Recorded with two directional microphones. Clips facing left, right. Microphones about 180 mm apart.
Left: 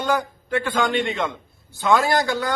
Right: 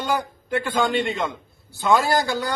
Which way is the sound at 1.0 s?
Centre (ahead or behind).